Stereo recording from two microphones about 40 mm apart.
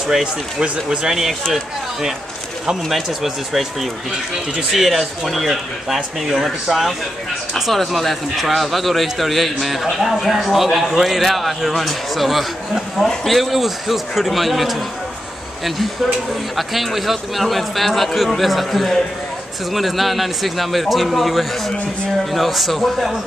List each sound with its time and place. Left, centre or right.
0.0 s a man's voice: centre